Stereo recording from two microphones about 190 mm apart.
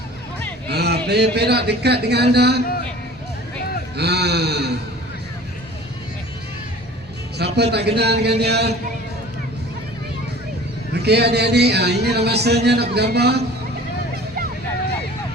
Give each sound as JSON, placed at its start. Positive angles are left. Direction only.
{"t": 0.7, "sound": "speech", "side_deg": -60}
{"t": 3.9, "sound": "speech", "side_deg": -60}
{"t": 7.3, "sound": "speech", "side_deg": -60}
{"t": 11.0, "sound": "speech", "side_deg": -60}